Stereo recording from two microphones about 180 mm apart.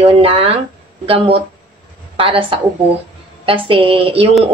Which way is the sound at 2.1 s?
30° right (ahead or behind).